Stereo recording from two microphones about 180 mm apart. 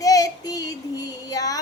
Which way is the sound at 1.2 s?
20° left (ahead or behind).